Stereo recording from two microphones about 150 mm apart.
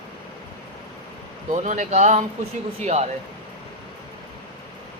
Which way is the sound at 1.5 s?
55° right (ahead or behind).